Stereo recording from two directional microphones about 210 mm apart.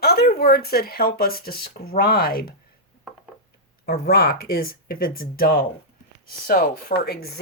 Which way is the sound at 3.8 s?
45° left (ahead or behind).